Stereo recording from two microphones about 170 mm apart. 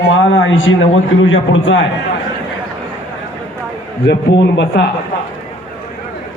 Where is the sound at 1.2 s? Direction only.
90° left.